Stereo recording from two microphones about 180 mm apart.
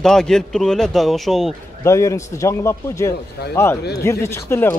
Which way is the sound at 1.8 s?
15° left (ahead or behind).